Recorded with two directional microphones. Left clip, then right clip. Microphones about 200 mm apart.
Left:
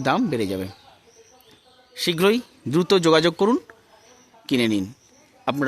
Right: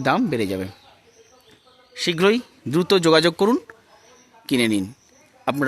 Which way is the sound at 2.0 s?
5° right (ahead or behind).